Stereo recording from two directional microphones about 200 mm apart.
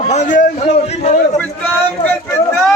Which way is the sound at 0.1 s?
35° left (ahead or behind).